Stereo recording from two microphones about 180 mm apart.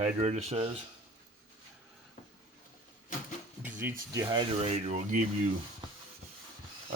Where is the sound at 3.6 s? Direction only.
10° right (ahead or behind).